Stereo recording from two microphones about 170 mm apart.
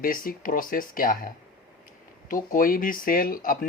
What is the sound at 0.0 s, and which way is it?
Speech, 55° left (ahead or behind).